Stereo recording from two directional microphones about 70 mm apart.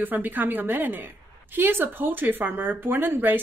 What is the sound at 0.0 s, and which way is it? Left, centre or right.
A woman's voice, right.